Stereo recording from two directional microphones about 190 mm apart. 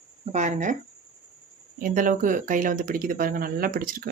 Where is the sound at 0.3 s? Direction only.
40° right (ahead or behind).